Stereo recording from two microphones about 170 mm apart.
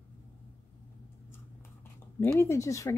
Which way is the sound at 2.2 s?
15° left (ahead or behind).